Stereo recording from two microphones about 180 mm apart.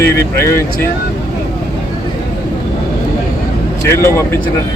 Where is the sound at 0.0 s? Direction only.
15° left (ahead or behind).